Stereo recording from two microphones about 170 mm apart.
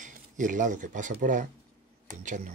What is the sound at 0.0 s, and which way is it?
Speech, 50° right (ahead or behind).